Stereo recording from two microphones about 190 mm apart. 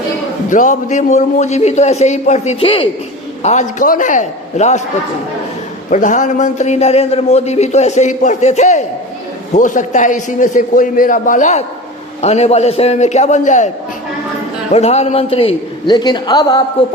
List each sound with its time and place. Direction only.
0.5 s a man's voice: 40° left (ahead or behind)
3.4 s a man's voice: 40° left (ahead or behind)
5.9 s a man's voice: 40° left (ahead or behind)
14.7 s a man's voice: 35° left (ahead or behind)